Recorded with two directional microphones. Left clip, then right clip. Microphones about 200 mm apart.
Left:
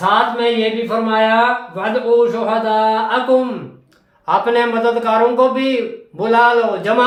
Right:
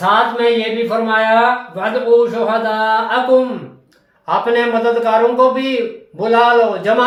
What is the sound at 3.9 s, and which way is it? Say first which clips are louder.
Speech: left 2 dB; 20° left (ahead or behind).